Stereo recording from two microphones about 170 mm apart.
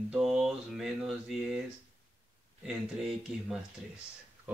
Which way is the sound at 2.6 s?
5° right (ahead or behind).